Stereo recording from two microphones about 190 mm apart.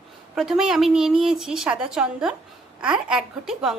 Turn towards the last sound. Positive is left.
turn(degrees=-5)  # may be behind; listen again after turning